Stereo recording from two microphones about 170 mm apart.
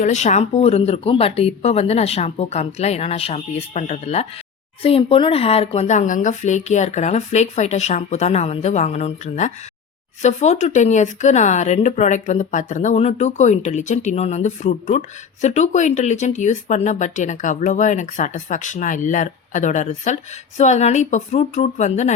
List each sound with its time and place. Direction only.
0.0 s speech: 45° left (ahead or behind)